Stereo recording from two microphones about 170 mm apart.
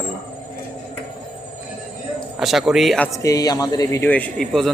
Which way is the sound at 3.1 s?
20° left (ahead or behind).